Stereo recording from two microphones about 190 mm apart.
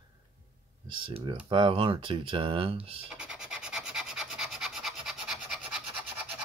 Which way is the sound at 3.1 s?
5° right (ahead or behind).